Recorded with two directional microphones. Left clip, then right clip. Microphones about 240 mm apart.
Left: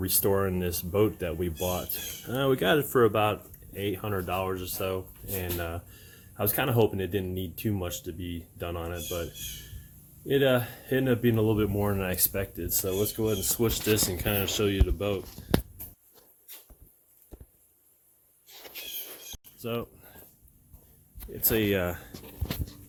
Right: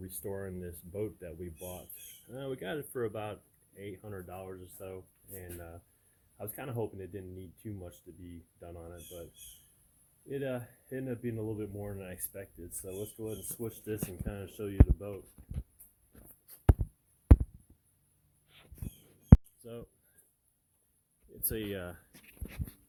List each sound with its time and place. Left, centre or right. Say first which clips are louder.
0.0 s speech: left 15 dB; centre
10.2 s speech: left 14 dB; centre
19.6 s speech: left 13 dB; centre
21.4 s speech: left 12 dB; centre